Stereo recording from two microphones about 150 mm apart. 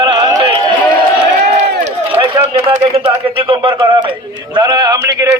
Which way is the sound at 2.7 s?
40° right (ahead or behind).